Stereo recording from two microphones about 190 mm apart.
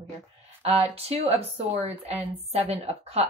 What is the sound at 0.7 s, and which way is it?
Speech, 30° right (ahead or behind).